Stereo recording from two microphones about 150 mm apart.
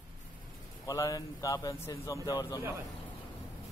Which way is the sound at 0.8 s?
25° left (ahead or behind).